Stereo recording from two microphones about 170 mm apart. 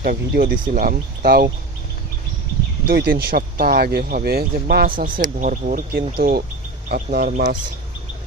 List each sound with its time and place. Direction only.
0.0 s speech: 60° right (ahead or behind)
2.8 s speech: 65° right (ahead or behind)
7.2 s speech: 50° right (ahead or behind)